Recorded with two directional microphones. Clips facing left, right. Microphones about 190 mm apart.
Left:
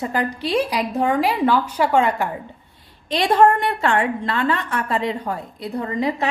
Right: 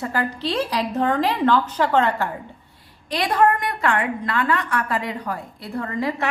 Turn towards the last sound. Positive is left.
turn(degrees=20)  # may be behind; listen again after turning